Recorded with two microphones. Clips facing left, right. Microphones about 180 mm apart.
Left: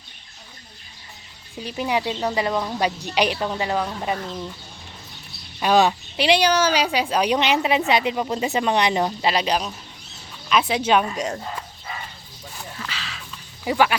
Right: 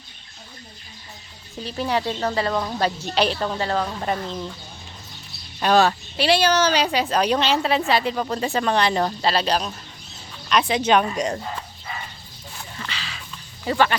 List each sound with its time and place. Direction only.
1.5 s speech: 10° left (ahead or behind)
5.6 s speech: 10° left (ahead or behind)
12.7 s a sound: centre (ahead or behind)
13.7 s speech: 10° left (ahead or behind)